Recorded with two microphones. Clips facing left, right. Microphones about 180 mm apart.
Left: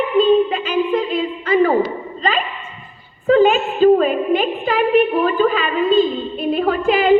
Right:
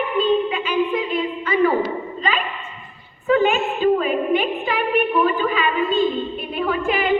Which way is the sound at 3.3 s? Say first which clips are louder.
Left 5 dB; 40° left (ahead or behind).